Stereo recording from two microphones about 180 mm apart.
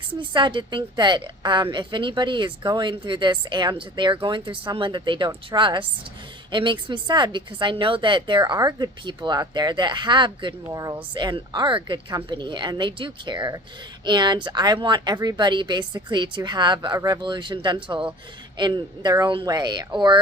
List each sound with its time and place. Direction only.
0.2 s speech: 25° right (ahead or behind)